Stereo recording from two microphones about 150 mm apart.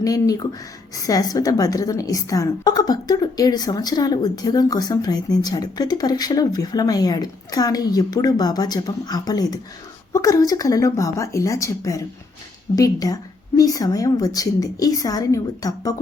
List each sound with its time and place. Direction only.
0.0 s a woman's voice: 25° left (ahead or behind)